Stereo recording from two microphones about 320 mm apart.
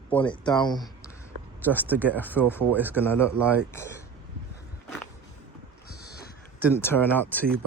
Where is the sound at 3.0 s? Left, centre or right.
Centre.